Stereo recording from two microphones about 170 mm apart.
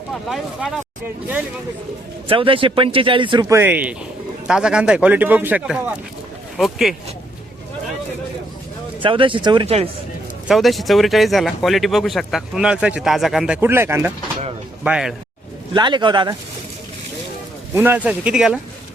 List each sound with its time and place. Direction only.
0.3 s speech: centre (ahead or behind)
2.2 s speech: 30° right (ahead or behind)
3.5 s a man's voice: 10° right (ahead or behind)
9.0 s speech: 30° right (ahead or behind)
10.5 s speech: centre (ahead or behind)
13.6 s a man's voice: 15° right (ahead or behind)
15.7 s speech: 25° right (ahead or behind)
17.7 s a man's voice: 10° right (ahead or behind)